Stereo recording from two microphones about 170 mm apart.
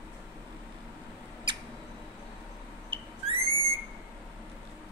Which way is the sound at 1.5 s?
30° right (ahead or behind).